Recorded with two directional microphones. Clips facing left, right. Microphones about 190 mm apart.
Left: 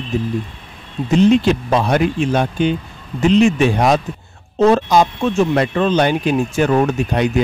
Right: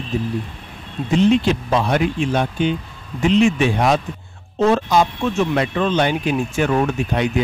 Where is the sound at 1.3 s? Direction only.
40° left (ahead or behind).